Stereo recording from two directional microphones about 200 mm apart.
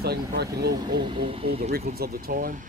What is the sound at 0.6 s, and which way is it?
Speech, 20° right (ahead or behind).